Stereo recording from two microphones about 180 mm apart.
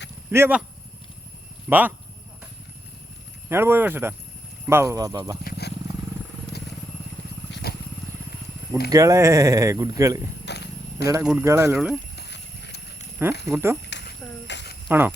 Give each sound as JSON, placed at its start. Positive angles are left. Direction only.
{"t": 0.3, "sound": "speech", "side_deg": -10}
{"t": 1.7, "sound": "speech", "side_deg": -10}
{"t": 3.5, "sound": "speech", "side_deg": -15}
{"t": 5.4, "sound": "wild animals", "side_deg": 60}
{"t": 7.5, "sound": "wild animals", "side_deg": 60}
{"t": 8.9, "sound": "speech", "side_deg": -20}
{"t": 10.4, "sound": "a sound", "side_deg": 70}
{"t": 10.9, "sound": "speech", "side_deg": -20}
{"t": 11.2, "sound": "speech", "side_deg": -5}
{"t": 12.1, "sound": "a sound", "side_deg": 70}
{"t": 13.5, "sound": "speech", "side_deg": -15}
{"t": 13.9, "sound": "a sound", "side_deg": 75}
{"t": 14.8, "sound": "speech", "side_deg": -10}